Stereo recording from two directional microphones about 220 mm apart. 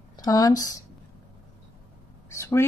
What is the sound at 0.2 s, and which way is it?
Speech, 15° left (ahead or behind).